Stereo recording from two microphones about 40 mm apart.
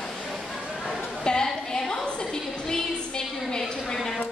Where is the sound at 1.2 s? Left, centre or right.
Centre.